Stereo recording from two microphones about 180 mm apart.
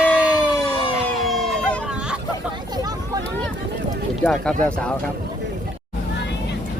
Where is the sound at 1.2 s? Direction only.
Centre (ahead or behind).